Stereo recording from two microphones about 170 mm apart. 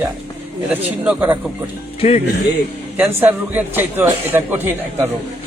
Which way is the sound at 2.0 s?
35° left (ahead or behind).